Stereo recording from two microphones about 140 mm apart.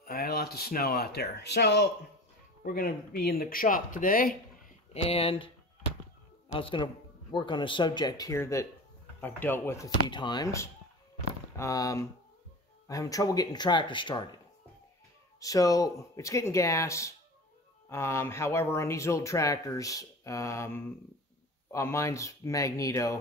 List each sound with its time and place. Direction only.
0.0 s speech: 90° left
2.6 s speech: 90° left
4.9 s speech: 45° left (ahead or behind)
6.5 s speech: 40° left (ahead or behind); by 9.8 s 15° left (ahead or behind)
10.0 s speech: 30° left (ahead or behind)
15.4 s speech: 25° left (ahead or behind)